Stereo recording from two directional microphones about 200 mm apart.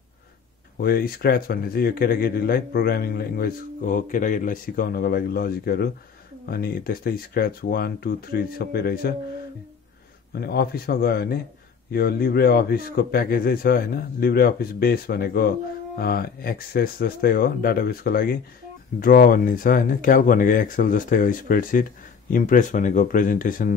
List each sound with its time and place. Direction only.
0.7 s speech: 50° left (ahead or behind)
10.3 s speech: 50° left (ahead or behind)